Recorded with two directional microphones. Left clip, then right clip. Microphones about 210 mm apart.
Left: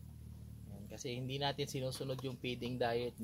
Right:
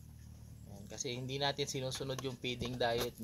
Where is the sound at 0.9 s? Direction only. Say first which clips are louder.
Right 2 dB; 10° right (ahead or behind).